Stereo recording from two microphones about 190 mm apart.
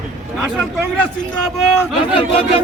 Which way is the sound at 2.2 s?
30° left (ahead or behind).